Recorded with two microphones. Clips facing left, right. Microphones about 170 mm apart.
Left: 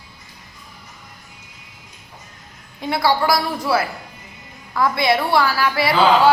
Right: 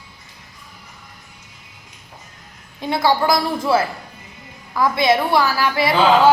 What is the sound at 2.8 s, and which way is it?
A woman's voice, 20° right (ahead or behind).